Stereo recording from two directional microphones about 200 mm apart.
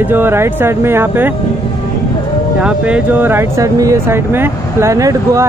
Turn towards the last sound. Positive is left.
turn(degrees=-15)  # may be behind; listen again after turning